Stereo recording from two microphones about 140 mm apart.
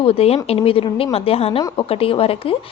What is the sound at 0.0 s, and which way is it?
A woman's voice, 45° left (ahead or behind).